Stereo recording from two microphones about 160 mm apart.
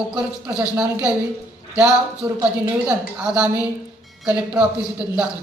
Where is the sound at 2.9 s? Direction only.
5° right (ahead or behind).